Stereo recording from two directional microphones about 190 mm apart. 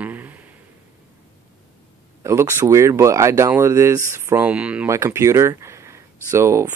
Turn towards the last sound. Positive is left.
turn(degrees=-15)  # may be behind; listen again after turning